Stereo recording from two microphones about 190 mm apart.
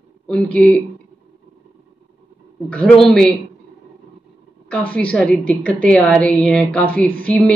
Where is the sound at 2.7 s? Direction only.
5° left (ahead or behind).